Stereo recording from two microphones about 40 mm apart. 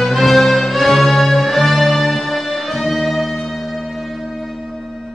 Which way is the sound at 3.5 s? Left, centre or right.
Centre.